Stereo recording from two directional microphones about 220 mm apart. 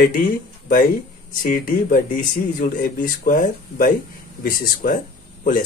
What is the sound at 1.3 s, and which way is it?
Speech, 40° left (ahead or behind).